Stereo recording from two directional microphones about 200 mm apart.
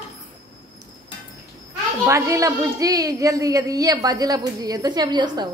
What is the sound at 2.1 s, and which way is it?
A woman's voice, 15° right (ahead or behind).